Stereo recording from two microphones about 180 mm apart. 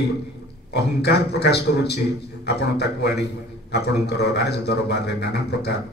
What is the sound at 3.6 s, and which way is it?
A man's voice, 65° left (ahead or behind).